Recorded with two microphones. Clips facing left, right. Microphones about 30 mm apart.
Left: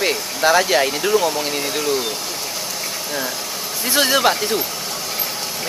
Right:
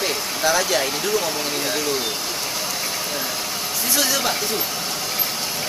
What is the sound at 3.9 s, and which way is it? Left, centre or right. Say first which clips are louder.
Speech: left 6 dB; left.